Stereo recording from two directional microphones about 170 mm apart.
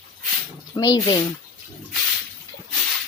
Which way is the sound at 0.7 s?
25° left (ahead or behind).